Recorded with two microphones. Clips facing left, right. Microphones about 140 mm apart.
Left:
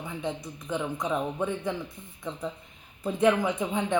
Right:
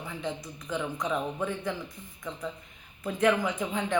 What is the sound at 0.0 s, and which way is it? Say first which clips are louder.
Speech: left 2 dB; 20° left (ahead or behind).